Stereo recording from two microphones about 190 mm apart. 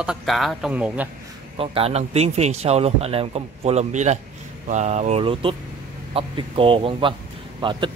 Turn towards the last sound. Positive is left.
turn(degrees=-25)  # may be behind; listen again after turning